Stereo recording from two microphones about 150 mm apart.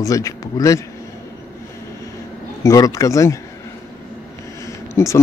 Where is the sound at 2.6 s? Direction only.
25° left (ahead or behind).